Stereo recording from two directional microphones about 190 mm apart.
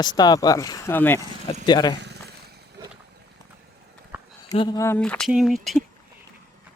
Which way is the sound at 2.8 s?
20° right (ahead or behind).